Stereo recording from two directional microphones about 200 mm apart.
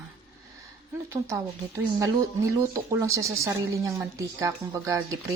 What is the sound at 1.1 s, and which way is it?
Speech, 15° right (ahead or behind).